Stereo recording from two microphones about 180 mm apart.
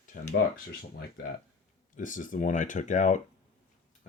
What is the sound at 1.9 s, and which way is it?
Speech, 45° left (ahead or behind).